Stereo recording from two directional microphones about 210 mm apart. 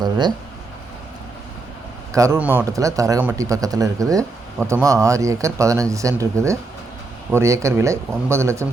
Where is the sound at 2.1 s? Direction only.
15° right (ahead or behind).